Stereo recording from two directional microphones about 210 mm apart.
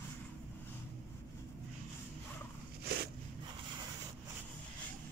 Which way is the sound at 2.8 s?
50° right (ahead or behind).